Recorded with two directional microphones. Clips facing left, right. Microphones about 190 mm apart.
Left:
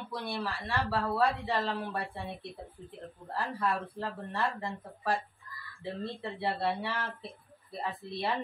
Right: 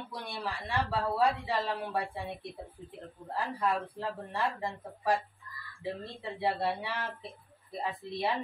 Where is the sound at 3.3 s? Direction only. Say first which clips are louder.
Right 1 dB; 15° right (ahead or behind).